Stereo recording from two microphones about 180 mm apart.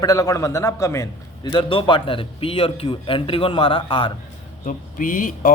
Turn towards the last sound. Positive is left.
turn(degrees=50)  # may be behind; listen again after turning